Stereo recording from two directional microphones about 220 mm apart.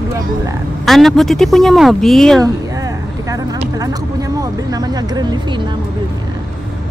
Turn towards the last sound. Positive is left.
turn(degrees=-15)  # may be behind; listen again after turning